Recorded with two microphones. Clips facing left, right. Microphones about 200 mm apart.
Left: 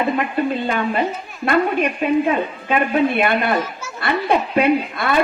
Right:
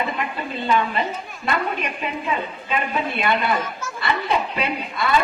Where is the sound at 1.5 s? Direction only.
55° left (ahead or behind).